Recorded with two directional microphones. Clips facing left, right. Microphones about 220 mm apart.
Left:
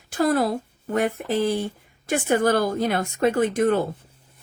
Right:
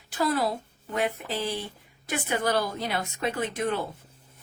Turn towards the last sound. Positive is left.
turn(degrees=45)  # may be behind; listen again after turning